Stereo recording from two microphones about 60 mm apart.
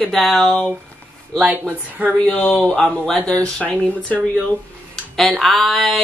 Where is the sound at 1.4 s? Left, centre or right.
Right.